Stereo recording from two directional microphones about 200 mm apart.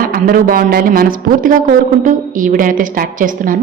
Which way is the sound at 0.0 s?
45° right (ahead or behind).